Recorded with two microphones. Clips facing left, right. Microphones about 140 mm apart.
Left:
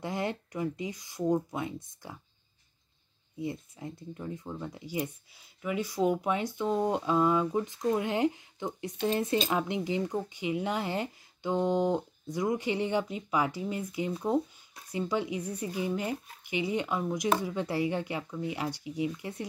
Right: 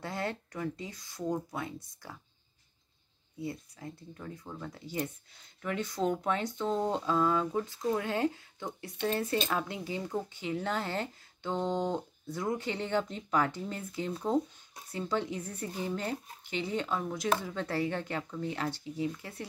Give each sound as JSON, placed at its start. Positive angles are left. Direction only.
{"t": 0.0, "sound": "speech", "side_deg": 15}
{"t": 3.3, "sound": "speech", "side_deg": 20}